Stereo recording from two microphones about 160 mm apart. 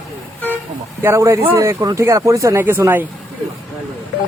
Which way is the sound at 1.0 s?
20° right (ahead or behind).